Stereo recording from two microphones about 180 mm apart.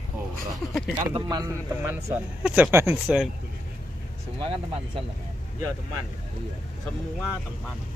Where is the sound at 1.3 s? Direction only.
15° right (ahead or behind).